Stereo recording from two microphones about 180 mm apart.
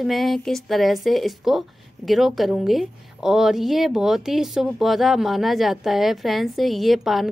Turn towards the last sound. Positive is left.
turn(degrees=0)  # may be behind; listen again after turning